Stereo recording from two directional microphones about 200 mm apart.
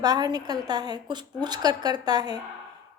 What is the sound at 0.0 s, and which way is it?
A woman's voice, 20° right (ahead or behind).